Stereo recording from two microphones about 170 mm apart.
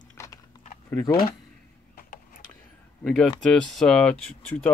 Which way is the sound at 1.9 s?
55° left (ahead or behind).